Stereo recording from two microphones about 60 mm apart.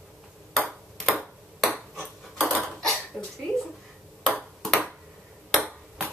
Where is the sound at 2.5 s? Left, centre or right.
Centre.